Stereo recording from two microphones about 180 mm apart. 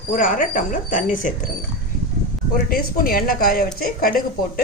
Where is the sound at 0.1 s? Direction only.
50° left (ahead or behind).